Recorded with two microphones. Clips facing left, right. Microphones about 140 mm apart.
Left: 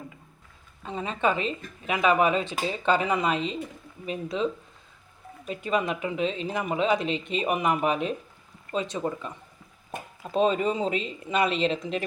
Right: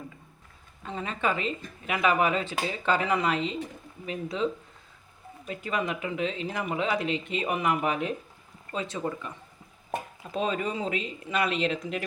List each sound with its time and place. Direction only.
0.9 s speech: 20° left (ahead or behind)
5.5 s speech: 20° left (ahead or behind)